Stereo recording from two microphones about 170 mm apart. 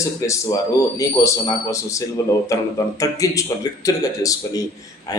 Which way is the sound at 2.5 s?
20° left (ahead or behind).